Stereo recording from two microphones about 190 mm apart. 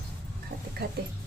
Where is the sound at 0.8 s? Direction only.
55° right (ahead or behind).